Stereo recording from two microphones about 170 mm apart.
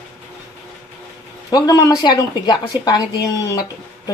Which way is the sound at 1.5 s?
20° left (ahead or behind).